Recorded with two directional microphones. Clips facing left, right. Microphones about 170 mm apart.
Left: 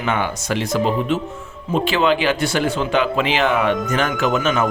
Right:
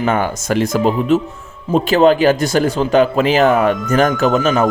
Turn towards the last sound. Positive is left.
turn(degrees=-35)  # may be behind; listen again after turning